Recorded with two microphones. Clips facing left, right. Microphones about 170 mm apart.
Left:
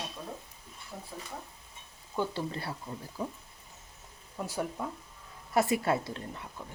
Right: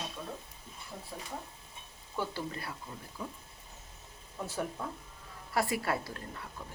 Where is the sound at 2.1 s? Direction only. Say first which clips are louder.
Left 4 dB; 25° left (ahead or behind).